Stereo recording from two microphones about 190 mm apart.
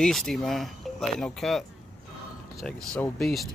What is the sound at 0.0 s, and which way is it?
Speech, centre (ahead or behind).